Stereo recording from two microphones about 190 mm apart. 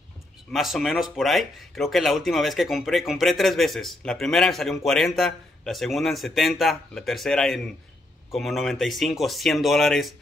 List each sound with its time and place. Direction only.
0.5 s speech: centre (ahead or behind)